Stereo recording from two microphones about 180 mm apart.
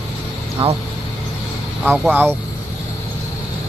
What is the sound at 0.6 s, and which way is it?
Speech, 30° right (ahead or behind).